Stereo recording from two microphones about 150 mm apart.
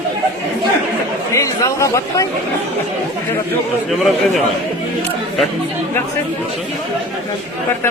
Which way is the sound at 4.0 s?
Centre (ahead or behind).